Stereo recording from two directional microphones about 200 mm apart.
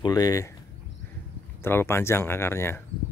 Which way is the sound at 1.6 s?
10° left (ahead or behind).